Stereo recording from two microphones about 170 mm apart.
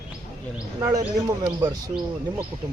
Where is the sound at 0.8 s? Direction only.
20° right (ahead or behind).